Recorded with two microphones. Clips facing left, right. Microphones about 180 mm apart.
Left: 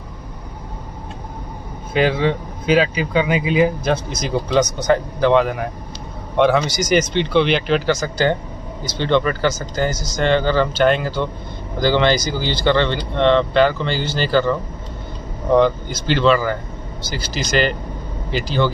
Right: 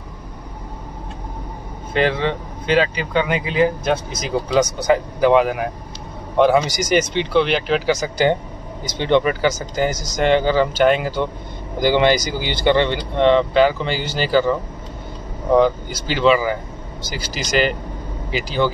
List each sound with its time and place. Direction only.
2.0 s speech: 5° left (ahead or behind)
3.8 s speech: centre (ahead or behind)
7.9 s speech: 15° right (ahead or behind)